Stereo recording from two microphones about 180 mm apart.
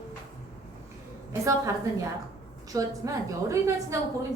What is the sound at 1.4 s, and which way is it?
A woman's voice, 20° right (ahead or behind).